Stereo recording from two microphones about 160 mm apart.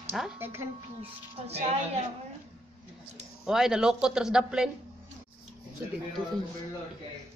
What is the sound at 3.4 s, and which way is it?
Speech, 5° right (ahead or behind).